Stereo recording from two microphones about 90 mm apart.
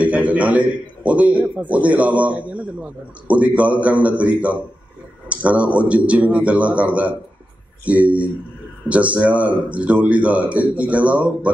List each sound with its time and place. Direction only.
0.0 s a man's voice: 15° right (ahead or behind)